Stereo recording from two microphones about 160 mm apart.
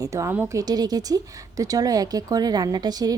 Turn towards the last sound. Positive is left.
turn(degrees=-25)  # may be behind; listen again after turning